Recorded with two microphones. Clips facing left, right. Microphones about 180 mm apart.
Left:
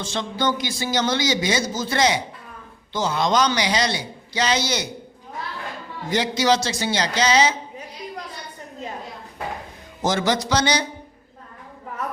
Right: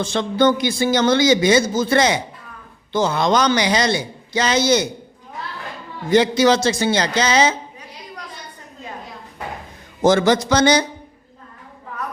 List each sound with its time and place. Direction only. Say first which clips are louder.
0.0 s a man's voice: right 7 dB; 55° right (ahead or behind)
6.1 s a man's voice: right 6 dB; 55° right (ahead or behind)
10.0 s a man's voice: right 7 dB; 55° right (ahead or behind)